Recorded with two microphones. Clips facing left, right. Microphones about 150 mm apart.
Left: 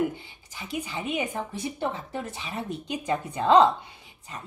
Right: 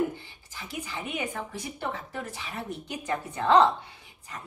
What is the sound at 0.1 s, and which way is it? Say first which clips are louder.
A woman's voice: left 1 dB; 15° left (ahead or behind).